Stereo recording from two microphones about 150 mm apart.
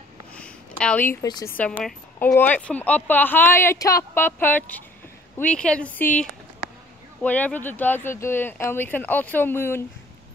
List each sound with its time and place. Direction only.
0.3 s a sound: 5° left (ahead or behind)
1.2 s a woman's voice: 25° left (ahead or behind)
1.6 s a woman's voice: 10° left (ahead or behind)